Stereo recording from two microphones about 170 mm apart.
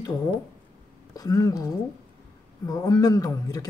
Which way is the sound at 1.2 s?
20° left (ahead or behind).